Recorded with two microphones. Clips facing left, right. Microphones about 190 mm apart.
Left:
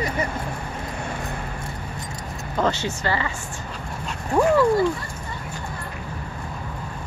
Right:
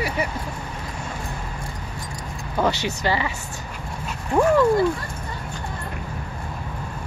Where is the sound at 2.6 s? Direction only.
15° right (ahead or behind).